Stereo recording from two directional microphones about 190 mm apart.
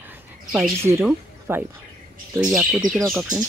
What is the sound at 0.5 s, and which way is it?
Speech, 10° right (ahead or behind).